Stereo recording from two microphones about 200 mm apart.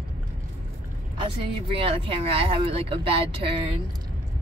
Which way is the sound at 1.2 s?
25° right (ahead or behind).